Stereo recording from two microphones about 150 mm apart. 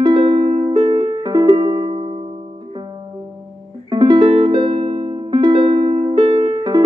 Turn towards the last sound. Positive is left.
turn(degrees=-35)  # may be behind; listen again after turning